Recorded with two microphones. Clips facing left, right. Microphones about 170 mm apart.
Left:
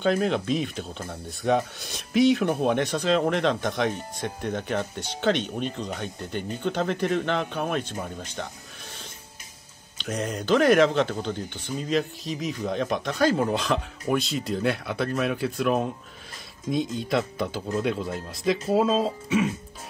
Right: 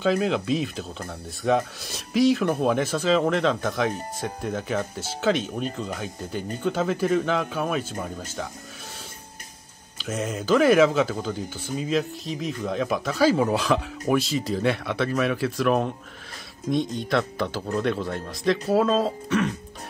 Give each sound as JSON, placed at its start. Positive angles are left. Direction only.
{"t": 0.0, "sound": "speech", "side_deg": 0}
{"t": 9.9, "sound": "speech", "side_deg": -5}